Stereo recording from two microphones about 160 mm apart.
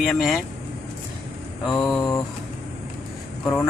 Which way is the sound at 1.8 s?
15° left (ahead or behind).